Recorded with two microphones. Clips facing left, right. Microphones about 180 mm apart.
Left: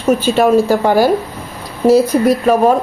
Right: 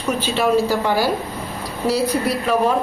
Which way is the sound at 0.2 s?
45° left (ahead or behind).